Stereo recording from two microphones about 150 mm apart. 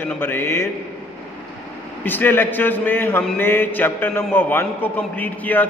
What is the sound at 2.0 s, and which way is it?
A man's voice, 15° left (ahead or behind).